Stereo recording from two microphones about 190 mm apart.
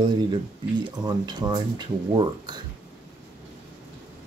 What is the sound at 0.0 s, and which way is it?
Speech, 25° right (ahead or behind).